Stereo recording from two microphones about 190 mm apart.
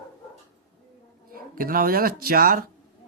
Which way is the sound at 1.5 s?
50° right (ahead or behind).